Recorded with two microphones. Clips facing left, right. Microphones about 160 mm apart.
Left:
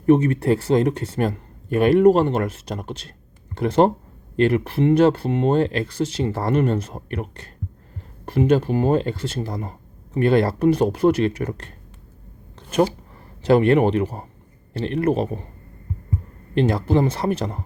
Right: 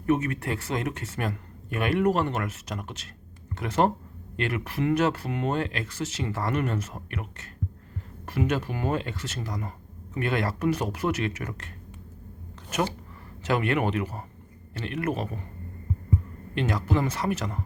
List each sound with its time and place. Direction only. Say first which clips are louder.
0.0 s speech: left 9 dB; 30° left (ahead or behind)
13.4 s speech: left 10 dB; 30° left (ahead or behind)
16.6 s speech: left 8 dB; 30° left (ahead or behind)